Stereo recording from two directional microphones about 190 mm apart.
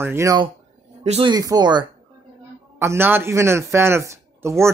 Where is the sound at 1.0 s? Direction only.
35° right (ahead or behind).